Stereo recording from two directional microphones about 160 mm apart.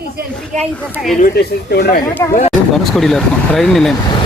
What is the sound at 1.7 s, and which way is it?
Speech, 70° left (ahead or behind).